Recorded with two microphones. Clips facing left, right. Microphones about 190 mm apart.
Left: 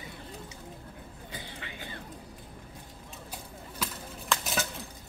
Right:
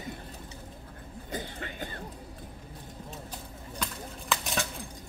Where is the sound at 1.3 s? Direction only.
45° right (ahead or behind).